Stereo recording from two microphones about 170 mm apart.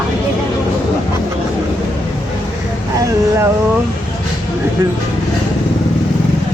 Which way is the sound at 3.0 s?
20° right (ahead or behind).